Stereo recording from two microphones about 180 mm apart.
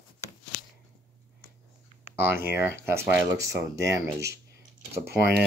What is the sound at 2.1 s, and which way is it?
Speech, 10° right (ahead or behind).